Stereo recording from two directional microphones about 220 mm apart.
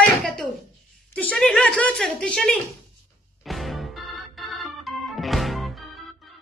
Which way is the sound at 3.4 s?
Centre (ahead or behind).